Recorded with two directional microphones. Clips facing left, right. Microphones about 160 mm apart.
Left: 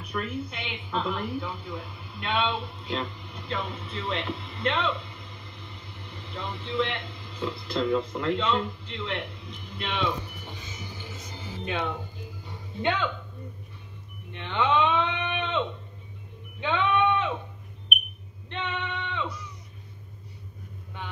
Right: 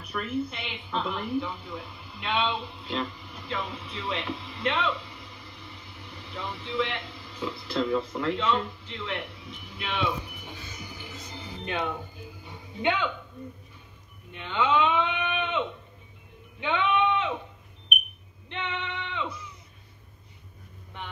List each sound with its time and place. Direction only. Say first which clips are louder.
0.1 s speech: right 2 dB; 5° right (ahead or behind)
10.8 s music: left 1 dB; 15° right (ahead or behind)
11.3 s music: left 1 dB; 10° left (ahead or behind)
12.0 s music: left 1 dB; 15° right (ahead or behind)
14.6 s a sound: even; 20° left (ahead or behind)
14.9 s a sound: even; 15° right (ahead or behind)
16.5 s speech: left 1 dB; 15° right (ahead or behind)
18.5 s female singing: left 1 dB; 15° right (ahead or behind)